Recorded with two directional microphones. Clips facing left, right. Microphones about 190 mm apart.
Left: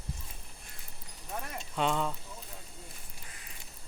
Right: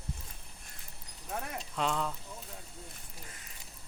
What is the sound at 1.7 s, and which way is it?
Speech, centre (ahead or behind).